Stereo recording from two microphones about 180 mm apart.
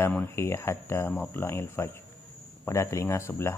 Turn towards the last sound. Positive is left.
turn(degrees=15)  # may be behind; listen again after turning